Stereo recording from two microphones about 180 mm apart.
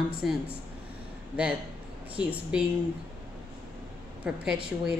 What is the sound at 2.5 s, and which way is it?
Speech, 5° right (ahead or behind).